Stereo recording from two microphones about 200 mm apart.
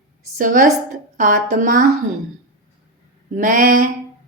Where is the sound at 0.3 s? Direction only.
45° right (ahead or behind).